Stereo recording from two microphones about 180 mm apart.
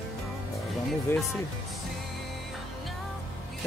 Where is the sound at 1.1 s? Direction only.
10° left (ahead or behind).